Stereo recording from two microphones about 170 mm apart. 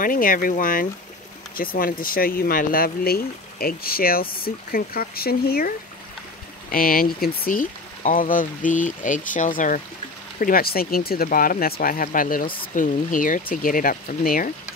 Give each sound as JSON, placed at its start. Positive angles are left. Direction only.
{"t": 0.0, "sound": "speech", "side_deg": 55}
{"t": 6.7, "sound": "speech", "side_deg": 60}
{"t": 10.4, "sound": "speech", "side_deg": 60}